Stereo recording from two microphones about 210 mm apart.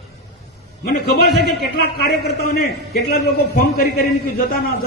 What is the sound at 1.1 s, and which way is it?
A man's voice, 50° left (ahead or behind).